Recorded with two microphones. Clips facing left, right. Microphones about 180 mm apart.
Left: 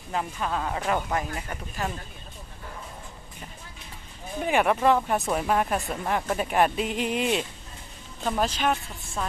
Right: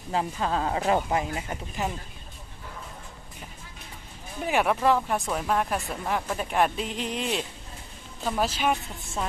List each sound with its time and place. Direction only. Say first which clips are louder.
0.1 s speech: right 2 dB; 25° right (ahead or behind)
4.5 s a woman's voice: left 1 dB; centre (ahead or behind)